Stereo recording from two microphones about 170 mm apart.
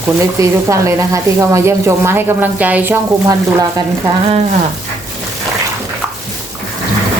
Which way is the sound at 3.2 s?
20° right (ahead or behind).